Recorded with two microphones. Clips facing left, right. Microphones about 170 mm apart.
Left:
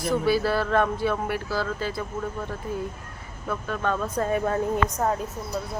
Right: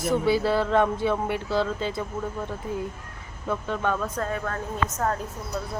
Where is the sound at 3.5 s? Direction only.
20° right (ahead or behind).